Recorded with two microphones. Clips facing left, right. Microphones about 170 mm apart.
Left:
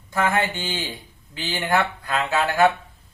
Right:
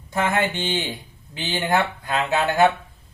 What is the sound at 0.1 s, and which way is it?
Speech, 25° right (ahead or behind).